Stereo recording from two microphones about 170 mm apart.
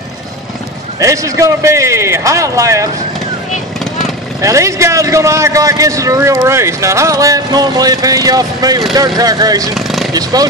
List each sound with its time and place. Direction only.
0.9 s a man's voice: 20° right (ahead or behind)
4.4 s a man's voice: 20° right (ahead or behind)
9.8 s a sound: centre (ahead or behind)
10.1 s a man's voice: 20° right (ahead or behind)